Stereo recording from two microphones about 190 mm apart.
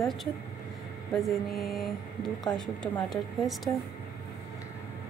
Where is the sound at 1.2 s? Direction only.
Centre (ahead or behind).